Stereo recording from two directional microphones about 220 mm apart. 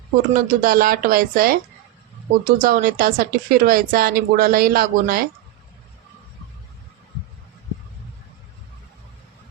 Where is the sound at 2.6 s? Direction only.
40° right (ahead or behind).